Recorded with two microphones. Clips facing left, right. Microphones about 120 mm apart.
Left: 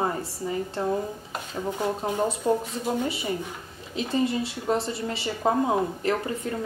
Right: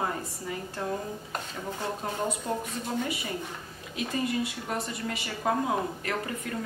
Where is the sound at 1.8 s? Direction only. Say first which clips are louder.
Left 6 dB; 15° left (ahead or behind).